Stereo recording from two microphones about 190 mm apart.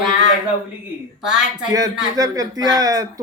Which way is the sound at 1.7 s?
20° right (ahead or behind).